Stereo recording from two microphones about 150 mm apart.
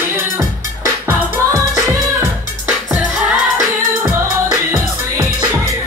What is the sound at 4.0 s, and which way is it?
Music, 15° right (ahead or behind).